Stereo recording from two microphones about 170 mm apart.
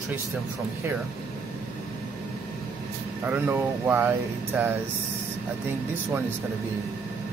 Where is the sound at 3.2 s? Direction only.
15° right (ahead or behind).